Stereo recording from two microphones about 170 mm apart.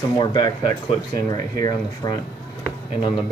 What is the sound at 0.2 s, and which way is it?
Speech, 25° left (ahead or behind).